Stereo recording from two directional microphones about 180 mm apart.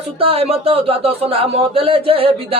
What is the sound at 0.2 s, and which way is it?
A man's voice, 30° right (ahead or behind).